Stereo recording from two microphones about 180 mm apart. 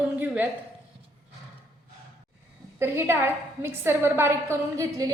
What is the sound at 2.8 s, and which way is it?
A woman's voice, 15° right (ahead or behind).